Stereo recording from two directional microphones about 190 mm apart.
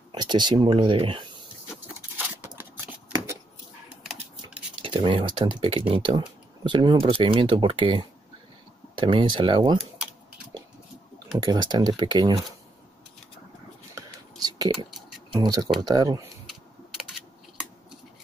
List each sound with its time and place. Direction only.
0.1 s speech: 25° right (ahead or behind)
2.1 s a sound: 10° right (ahead or behind)
4.8 s speech: 25° right (ahead or behind)
11.3 s speech: 20° right (ahead or behind)
13.9 s whispering: 20° right (ahead or behind)
15.0 s a sound: centre (ahead or behind)
15.3 s speech: 20° right (ahead or behind)